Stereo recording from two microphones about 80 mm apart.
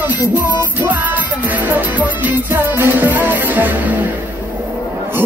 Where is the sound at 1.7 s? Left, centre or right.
Right.